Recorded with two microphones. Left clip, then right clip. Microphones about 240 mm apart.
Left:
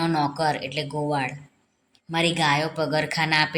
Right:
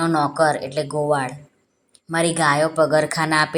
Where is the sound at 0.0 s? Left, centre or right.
Centre.